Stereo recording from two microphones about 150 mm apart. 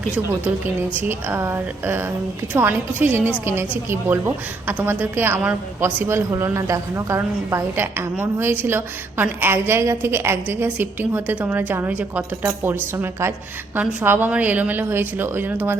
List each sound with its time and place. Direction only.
0.3 s a woman's voice: 15° right (ahead or behind)